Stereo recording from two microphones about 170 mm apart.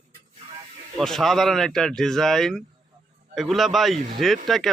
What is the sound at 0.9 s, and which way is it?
Speech, centre (ahead or behind).